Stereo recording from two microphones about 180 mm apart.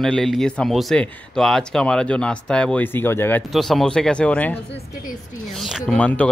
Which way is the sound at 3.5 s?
Centre (ahead or behind).